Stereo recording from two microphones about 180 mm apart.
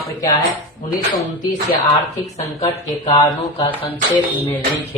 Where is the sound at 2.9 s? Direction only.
25° left (ahead or behind).